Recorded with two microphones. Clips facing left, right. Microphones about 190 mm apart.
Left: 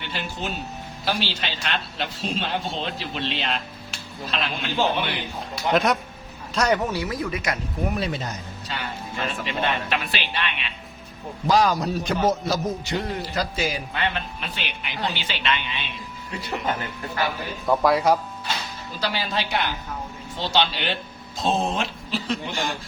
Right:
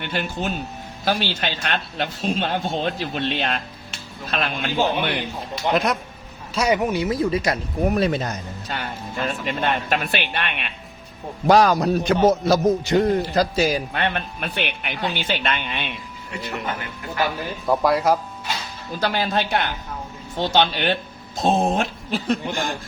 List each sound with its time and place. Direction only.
0.0 s speech: 50° right (ahead or behind)
5.4 s a man's voice: centre (ahead or behind); by 7.6 s 30° right (ahead or behind)
7.9 s a man's voice: 55° right (ahead or behind)
13.9 s a man's voice: 55° right (ahead or behind)
17.7 s a man's voice: centre (ahead or behind)
18.9 s speech: 50° right (ahead or behind)